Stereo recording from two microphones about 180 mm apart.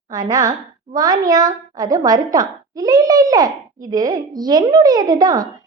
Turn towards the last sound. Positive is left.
turn(degrees=-20)  # may be behind; listen again after turning